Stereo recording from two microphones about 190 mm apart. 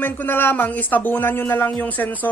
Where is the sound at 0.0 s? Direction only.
10° left (ahead or behind).